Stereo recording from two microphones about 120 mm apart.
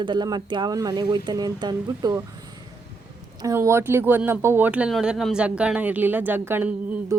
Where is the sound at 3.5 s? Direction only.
20° right (ahead or behind).